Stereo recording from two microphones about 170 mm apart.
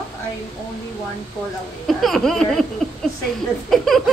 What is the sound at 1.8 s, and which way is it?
Speech, centre (ahead or behind).